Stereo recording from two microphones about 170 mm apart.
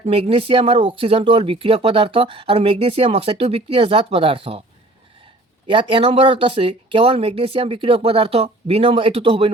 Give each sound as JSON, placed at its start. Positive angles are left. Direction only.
{"t": 0.0, "sound": "speech", "side_deg": -35}
{"t": 5.6, "sound": "speech", "side_deg": -30}